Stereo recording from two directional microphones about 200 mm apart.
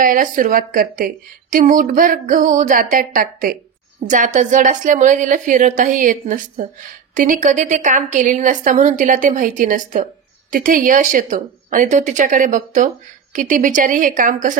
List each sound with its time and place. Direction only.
0.0 s a woman's voice: 45° right (ahead or behind)